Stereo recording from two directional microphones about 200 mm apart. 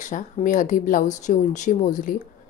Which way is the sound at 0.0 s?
40° left (ahead or behind).